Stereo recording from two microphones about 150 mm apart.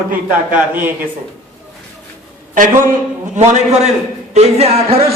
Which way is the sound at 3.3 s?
50° right (ahead or behind).